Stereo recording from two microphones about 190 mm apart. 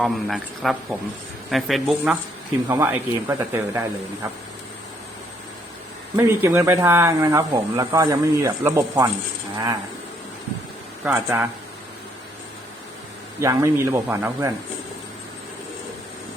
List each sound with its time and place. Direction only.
0.0 s a man's voice: centre (ahead or behind)
2.6 s speech: 15° right (ahead or behind)
6.1 s speech: 10° right (ahead or behind)
11.0 s speech: 10° right (ahead or behind)
13.4 s speech: 15° right (ahead or behind)